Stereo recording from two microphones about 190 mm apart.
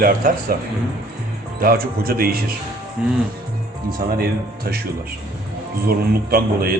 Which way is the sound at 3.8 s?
50° right (ahead or behind).